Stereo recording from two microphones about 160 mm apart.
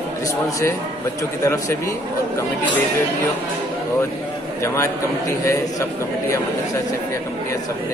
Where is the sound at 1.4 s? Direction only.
20° left (ahead or behind).